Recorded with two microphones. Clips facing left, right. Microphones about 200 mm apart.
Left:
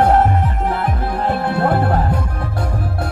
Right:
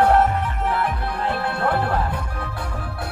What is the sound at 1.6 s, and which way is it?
Music, 40° left (ahead or behind).